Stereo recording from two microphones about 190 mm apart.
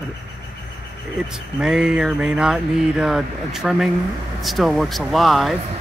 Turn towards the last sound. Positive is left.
turn(degrees=0)  # may be behind; listen again after turning